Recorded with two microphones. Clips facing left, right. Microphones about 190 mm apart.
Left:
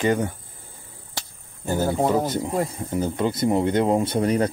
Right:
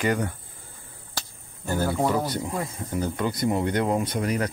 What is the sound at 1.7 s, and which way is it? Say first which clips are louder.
Speech: left 3 dB; 15° left (ahead or behind).